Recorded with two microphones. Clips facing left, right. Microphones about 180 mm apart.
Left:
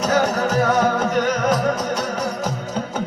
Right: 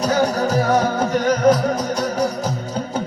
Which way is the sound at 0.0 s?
35° right (ahead or behind).